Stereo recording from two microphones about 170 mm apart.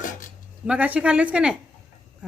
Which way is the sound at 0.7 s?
10° right (ahead or behind).